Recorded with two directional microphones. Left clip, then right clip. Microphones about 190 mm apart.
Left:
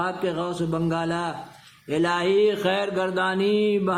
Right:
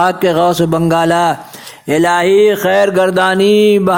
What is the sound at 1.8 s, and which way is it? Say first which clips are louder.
Mantra: right 12 dB; 40° right (ahead or behind).